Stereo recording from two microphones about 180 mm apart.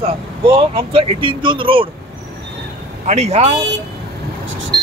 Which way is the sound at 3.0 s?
40° right (ahead or behind).